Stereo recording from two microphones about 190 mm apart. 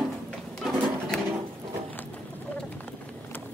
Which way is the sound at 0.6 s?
5° left (ahead or behind).